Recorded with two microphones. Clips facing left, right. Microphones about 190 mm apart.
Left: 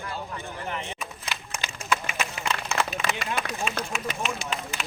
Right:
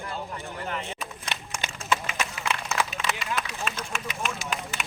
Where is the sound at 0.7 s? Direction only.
10° left (ahead or behind).